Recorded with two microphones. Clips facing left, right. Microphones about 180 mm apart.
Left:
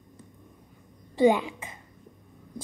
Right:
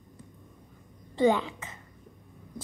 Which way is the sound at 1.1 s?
10° left (ahead or behind).